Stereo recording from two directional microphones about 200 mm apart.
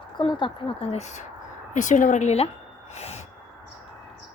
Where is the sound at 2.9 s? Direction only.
30° left (ahead or behind).